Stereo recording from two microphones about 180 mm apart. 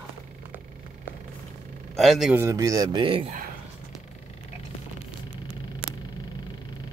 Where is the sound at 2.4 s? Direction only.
15° right (ahead or behind).